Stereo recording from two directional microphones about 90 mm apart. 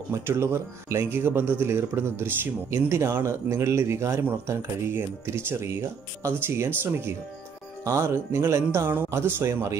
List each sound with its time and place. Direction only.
0.1 s speech: 30° right (ahead or behind)